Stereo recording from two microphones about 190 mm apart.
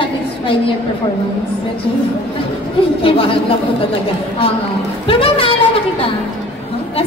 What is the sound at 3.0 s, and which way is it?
Speech, 30° left (ahead or behind).